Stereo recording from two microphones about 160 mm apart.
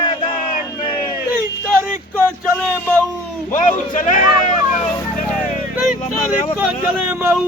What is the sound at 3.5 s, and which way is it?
Vehicle, 55° left (ahead or behind).